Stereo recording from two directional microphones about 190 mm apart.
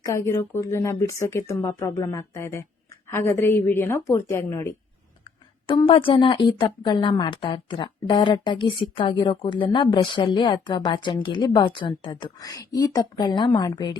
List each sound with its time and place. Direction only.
0.3 s speech: 15° left (ahead or behind)
5.2 s a woman's voice: 25° left (ahead or behind)